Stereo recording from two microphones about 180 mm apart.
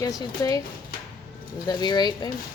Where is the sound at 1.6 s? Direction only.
25° left (ahead or behind).